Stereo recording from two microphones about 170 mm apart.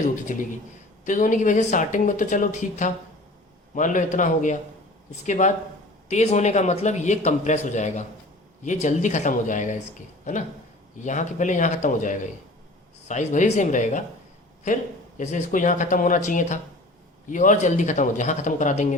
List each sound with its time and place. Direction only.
0.0 s a man's voice: 50° left (ahead or behind)
10.9 s a man's voice: 45° left (ahead or behind)
15.2 s a man's voice: 45° left (ahead or behind)